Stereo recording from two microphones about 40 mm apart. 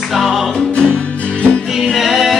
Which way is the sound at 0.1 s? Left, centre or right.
Centre.